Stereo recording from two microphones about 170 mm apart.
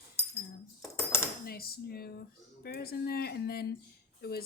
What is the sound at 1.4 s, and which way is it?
A woman's voice, 60° left (ahead or behind).